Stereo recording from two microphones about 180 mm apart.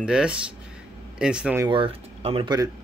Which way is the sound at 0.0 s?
5° right (ahead or behind).